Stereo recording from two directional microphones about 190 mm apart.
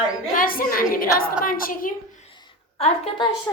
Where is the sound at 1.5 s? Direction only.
50° left (ahead or behind).